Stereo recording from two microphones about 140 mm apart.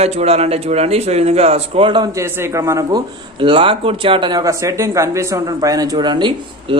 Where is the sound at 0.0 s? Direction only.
50° right (ahead or behind).